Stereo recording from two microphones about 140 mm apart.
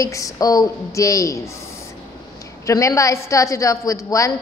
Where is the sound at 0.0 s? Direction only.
25° left (ahead or behind).